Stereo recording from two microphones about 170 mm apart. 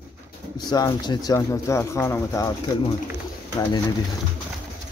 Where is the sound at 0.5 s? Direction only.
25° left (ahead or behind).